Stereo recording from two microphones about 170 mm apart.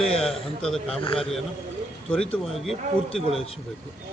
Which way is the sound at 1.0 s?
30° left (ahead or behind).